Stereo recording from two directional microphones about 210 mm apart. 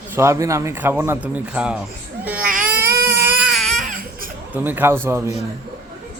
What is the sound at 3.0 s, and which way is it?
Baby cry, 10° right (ahead or behind).